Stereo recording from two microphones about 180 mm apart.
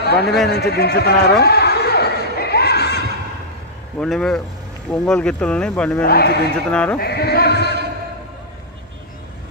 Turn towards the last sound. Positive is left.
turn(degrees=65)  # may be behind; listen again after turning